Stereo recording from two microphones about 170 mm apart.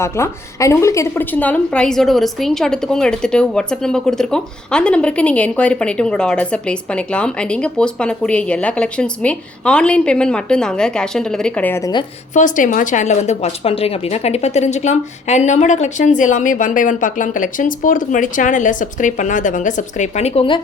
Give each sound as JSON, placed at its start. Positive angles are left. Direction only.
{"t": 0.0, "sound": "a woman's voice", "side_deg": 15}
{"t": 12.3, "sound": "speech", "side_deg": 50}